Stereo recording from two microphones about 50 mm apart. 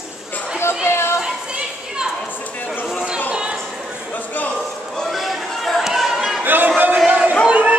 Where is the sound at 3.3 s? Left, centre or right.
Centre.